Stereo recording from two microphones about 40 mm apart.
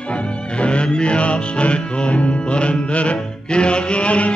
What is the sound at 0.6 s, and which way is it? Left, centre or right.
Music, left.